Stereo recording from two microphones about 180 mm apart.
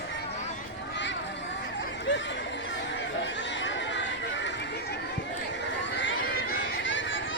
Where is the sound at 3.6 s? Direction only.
90° left.